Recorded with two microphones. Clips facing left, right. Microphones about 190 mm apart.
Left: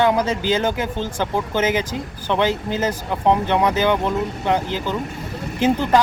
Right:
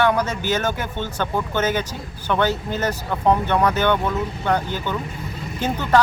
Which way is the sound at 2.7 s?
15° left (ahead or behind).